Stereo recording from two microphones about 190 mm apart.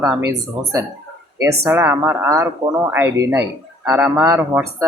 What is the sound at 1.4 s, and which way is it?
Speech, 15° right (ahead or behind).